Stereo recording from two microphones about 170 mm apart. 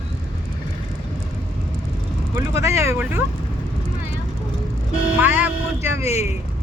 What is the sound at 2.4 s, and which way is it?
Speech, 15° right (ahead or behind).